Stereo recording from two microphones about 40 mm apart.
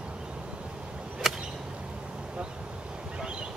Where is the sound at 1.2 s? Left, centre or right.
Centre.